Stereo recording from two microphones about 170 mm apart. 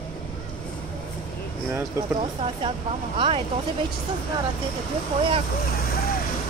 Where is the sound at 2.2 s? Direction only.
30° right (ahead or behind).